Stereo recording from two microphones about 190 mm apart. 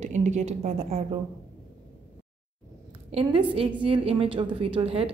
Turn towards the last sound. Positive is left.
turn(degrees=-30)  # may be behind; listen again after turning